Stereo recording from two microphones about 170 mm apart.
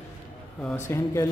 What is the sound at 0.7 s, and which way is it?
Speech, 15° left (ahead or behind).